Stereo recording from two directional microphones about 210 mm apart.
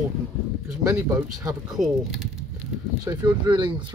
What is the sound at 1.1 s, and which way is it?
Speech, 15° right (ahead or behind).